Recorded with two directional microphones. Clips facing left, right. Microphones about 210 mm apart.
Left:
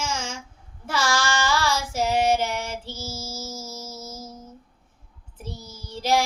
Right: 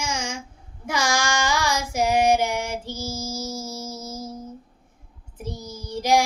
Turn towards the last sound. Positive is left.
turn(degrees=-15)  # may be behind; listen again after turning